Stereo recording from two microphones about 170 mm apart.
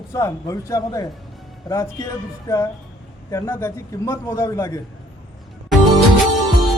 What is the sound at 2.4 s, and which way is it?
A man's voice, 20° left (ahead or behind).